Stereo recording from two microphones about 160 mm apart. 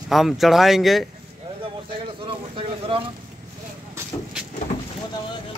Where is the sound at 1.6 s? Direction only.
35° right (ahead or behind).